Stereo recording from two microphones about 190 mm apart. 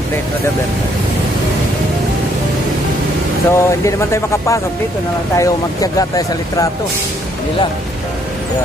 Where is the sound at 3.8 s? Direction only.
15° left (ahead or behind).